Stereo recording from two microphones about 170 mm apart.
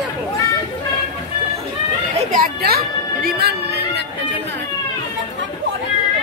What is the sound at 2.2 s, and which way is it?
Music, 50° right (ahead or behind).